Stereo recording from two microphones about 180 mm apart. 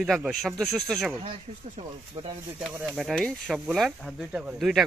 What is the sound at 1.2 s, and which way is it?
Speech, 30° right (ahead or behind).